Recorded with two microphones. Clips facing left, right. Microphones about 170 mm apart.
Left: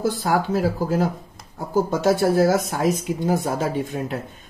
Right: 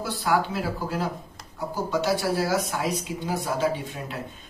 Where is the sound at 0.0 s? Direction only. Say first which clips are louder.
Left 3 dB; 45° left (ahead or behind).